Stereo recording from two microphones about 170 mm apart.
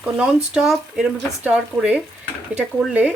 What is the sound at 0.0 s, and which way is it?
Speech, 5° right (ahead or behind).